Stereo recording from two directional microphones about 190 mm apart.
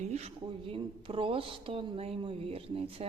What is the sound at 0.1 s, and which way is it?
A woman's voice, 35° right (ahead or behind).